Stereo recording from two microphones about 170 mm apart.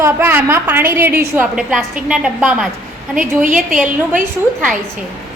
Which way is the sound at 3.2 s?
50° right (ahead or behind).